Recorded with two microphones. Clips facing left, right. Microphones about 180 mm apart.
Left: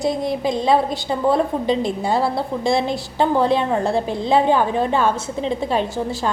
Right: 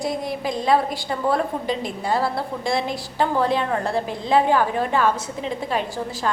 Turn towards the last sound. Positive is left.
turn(degrees=25)  # may be behind; listen again after turning